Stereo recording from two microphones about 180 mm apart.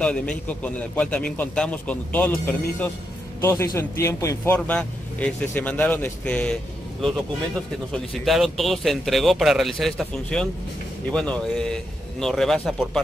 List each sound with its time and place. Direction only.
0.0 s speech: 5° left (ahead or behind)
4.6 s speech: 5° left (ahead or behind)